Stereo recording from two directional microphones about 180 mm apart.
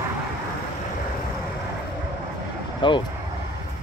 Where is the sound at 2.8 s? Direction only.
25° left (ahead or behind).